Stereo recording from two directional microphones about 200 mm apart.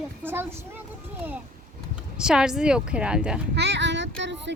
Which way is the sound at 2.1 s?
5° right (ahead or behind).